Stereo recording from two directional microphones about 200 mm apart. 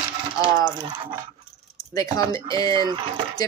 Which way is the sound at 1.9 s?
20° left (ahead or behind).